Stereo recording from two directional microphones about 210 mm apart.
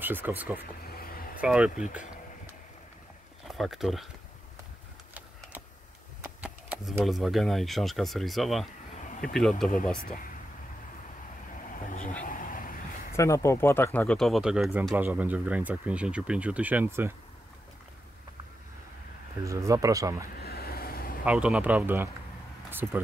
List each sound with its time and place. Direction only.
0.0 s speech: 10° right (ahead or behind)
0.8 s vehicle: 45° left (ahead or behind)
1.4 s speech: 5° right (ahead or behind)
3.4 s speech: centre (ahead or behind)
6.2 s speech: 5° right (ahead or behind)
8.9 s a sound: 35° left (ahead or behind)
9.3 s speech: centre (ahead or behind)
11.5 s vehicle: 40° left (ahead or behind)
13.1 s speech: 15° left (ahead or behind); by 17.1 s 10° right (ahead or behind)
19.4 s speech: 15° right (ahead or behind)
20.3 s a sound: 45° left (ahead or behind)
21.3 s speech: 5° right (ahead or behind)